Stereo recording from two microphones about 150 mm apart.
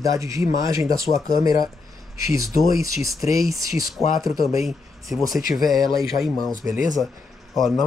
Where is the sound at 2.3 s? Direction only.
20° right (ahead or behind).